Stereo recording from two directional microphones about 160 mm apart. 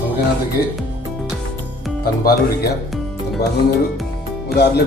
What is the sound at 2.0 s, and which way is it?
Speech, 70° left (ahead or behind).